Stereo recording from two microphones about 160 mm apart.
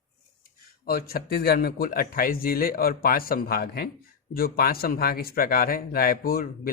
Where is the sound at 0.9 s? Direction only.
70° left (ahead or behind).